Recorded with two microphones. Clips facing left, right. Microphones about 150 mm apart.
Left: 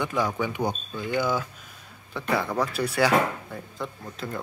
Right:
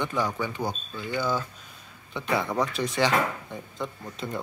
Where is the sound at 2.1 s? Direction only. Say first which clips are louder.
Left 1 dB; centre (ahead or behind).